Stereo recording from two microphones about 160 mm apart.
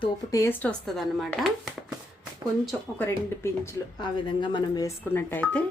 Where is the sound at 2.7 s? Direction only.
10° left (ahead or behind).